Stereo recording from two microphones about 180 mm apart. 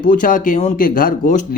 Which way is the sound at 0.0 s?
50° left (ahead or behind).